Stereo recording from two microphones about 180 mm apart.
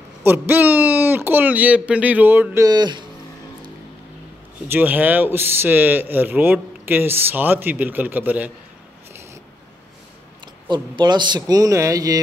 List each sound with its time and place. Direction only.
0.2 s speech: 10° right (ahead or behind)
4.6 s speech: 10° right (ahead or behind)
10.7 s a man's voice: 25° right (ahead or behind)